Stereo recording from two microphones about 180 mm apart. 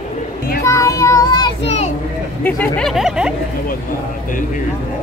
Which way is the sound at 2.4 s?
10° left (ahead or behind).